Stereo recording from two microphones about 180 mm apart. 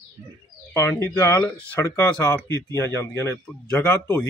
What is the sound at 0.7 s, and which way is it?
Speech, 10° left (ahead or behind).